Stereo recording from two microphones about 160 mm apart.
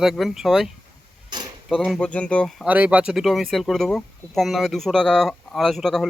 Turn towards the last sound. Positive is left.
turn(degrees=0)  # may be behind; listen again after turning